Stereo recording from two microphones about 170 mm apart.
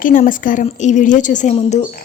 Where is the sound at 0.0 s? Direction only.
50° left (ahead or behind).